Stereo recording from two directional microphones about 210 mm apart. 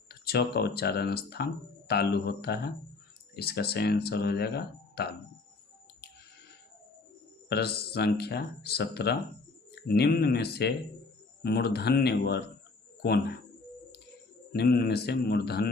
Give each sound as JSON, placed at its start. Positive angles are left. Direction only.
{"t": 0.1, "sound": "speech", "side_deg": 50}
{"t": 7.5, "sound": "speech", "side_deg": 50}
{"t": 14.5, "sound": "speech", "side_deg": 50}